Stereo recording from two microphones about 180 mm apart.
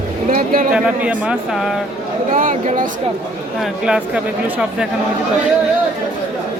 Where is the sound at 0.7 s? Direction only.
5° right (ahead or behind).